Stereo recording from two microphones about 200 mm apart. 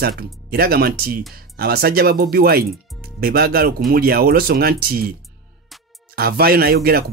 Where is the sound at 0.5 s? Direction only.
50° right (ahead or behind).